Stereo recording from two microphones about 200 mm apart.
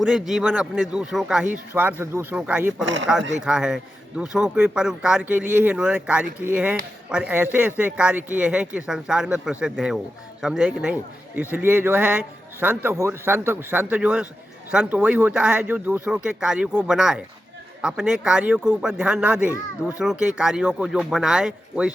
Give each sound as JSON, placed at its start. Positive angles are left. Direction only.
{"t": 0.0, "sound": "speech", "side_deg": 0}
{"t": 2.8, "sound": "speech", "side_deg": -65}
{"t": 3.4, "sound": "speech", "side_deg": -5}